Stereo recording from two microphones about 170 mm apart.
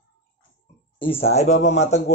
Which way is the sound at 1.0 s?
35° left (ahead or behind).